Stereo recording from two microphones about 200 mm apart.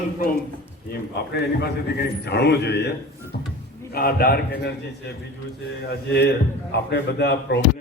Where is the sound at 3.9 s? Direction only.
50° left (ahead or behind).